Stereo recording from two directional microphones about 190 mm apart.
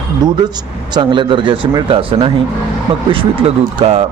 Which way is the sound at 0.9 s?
25° right (ahead or behind).